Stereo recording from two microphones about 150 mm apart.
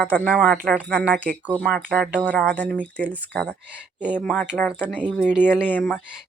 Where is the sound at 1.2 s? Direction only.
10° right (ahead or behind).